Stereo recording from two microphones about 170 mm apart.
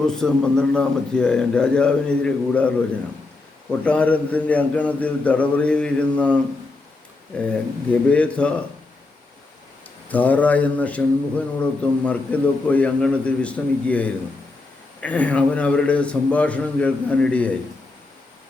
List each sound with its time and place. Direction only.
0.0 s a man's voice: 5° left (ahead or behind)
10.1 s a man's voice: 10° left (ahead or behind)